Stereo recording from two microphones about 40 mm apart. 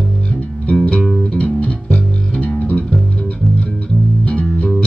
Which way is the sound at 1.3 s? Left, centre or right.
Left.